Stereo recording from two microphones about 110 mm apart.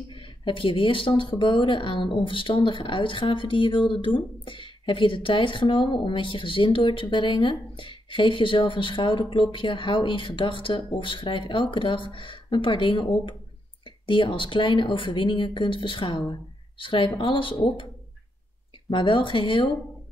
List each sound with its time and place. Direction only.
0.1 s speech: 50° left (ahead or behind)
18.9 s speech: 50° left (ahead or behind)